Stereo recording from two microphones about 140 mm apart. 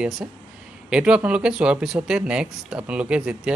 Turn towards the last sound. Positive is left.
turn(degrees=-5)  # may be behind; listen again after turning